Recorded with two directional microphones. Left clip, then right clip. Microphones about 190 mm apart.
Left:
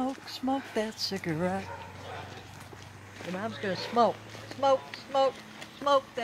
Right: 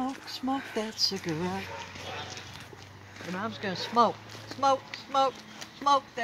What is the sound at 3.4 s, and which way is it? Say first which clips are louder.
Speech: left 1 dB; 50° right (ahead or behind).